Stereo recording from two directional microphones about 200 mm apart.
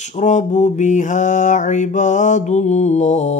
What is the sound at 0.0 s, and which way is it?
Mantra, 35° left (ahead or behind).